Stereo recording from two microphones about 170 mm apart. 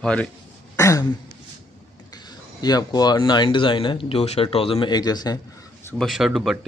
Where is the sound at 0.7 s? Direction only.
15° left (ahead or behind).